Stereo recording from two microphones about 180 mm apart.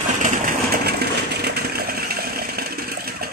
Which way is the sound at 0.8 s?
65° right (ahead or behind).